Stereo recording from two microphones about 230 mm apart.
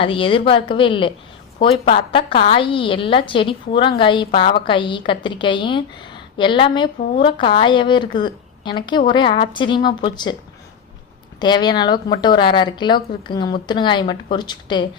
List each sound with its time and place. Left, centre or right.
0.0 s a woman's voice: left
11.3 s a woman's voice: centre